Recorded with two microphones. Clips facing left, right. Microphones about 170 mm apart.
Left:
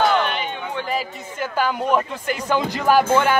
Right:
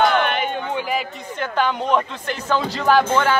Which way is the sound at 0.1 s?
55° right (ahead or behind).